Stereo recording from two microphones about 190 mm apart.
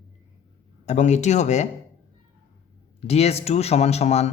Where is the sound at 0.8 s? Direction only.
40° left (ahead or behind).